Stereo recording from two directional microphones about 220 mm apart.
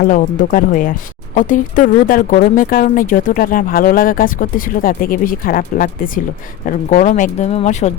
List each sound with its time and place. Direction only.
0.0 s speech: 35° left (ahead or behind)